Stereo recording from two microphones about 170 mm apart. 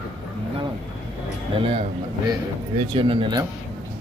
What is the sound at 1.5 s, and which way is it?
Speech, 30° right (ahead or behind).